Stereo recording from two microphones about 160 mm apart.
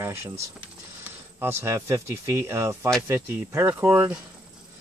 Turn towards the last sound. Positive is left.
turn(degrees=-15)  # may be behind; listen again after turning